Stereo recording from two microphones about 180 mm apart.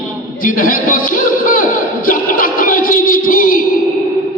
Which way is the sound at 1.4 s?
50° left (ahead or behind).